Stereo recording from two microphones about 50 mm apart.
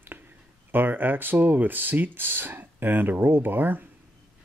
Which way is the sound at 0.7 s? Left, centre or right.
Right.